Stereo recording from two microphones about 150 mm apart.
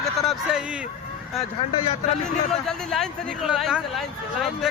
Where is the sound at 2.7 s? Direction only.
Centre (ahead or behind).